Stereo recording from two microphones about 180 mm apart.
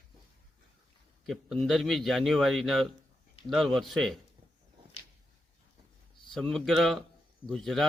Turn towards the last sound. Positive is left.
turn(degrees=0)  # may be behind; listen again after turning